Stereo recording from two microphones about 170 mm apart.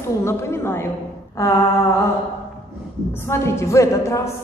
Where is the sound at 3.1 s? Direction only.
15° left (ahead or behind).